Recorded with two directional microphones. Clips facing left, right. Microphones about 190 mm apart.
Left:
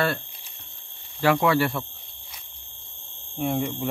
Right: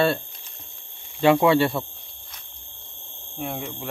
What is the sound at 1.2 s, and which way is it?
Speech, 25° right (ahead or behind).